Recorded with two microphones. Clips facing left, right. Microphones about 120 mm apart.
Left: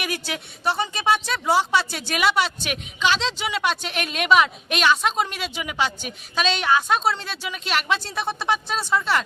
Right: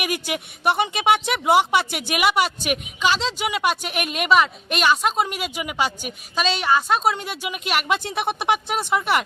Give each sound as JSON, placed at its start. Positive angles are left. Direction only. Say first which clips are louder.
{"t": 0.0, "sound": "speech", "louder": "right 3 dB", "side_deg": -15}
{"t": 7.0, "sound": "speech", "louder": "right 2 dB", "side_deg": -15}